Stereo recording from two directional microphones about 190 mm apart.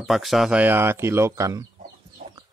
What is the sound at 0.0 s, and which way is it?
Speech, centre (ahead or behind).